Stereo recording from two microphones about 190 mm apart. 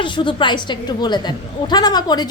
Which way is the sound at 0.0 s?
25° left (ahead or behind).